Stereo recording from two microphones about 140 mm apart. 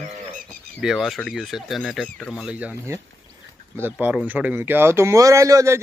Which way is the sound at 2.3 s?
10° right (ahead or behind).